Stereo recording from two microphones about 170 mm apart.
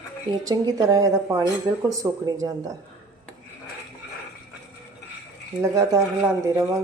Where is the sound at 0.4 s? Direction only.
20° right (ahead or behind).